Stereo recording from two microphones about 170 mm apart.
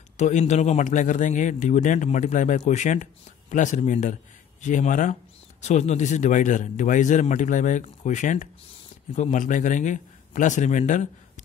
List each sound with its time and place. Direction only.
0.2 s speech: 45° left (ahead or behind)